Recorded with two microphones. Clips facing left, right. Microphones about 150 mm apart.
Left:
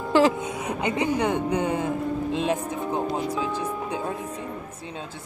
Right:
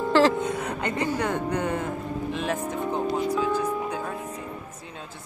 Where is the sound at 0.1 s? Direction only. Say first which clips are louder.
Left 1 dB; 10° left (ahead or behind).